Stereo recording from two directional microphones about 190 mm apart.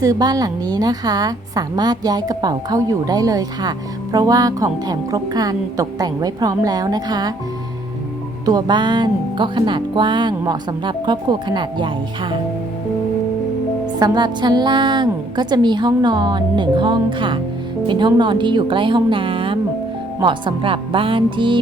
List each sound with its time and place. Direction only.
0.0 s a woman's voice: 20° right (ahead or behind)
8.4 s a woman's voice: 20° right (ahead or behind)
14.0 s a woman's voice: 20° right (ahead or behind)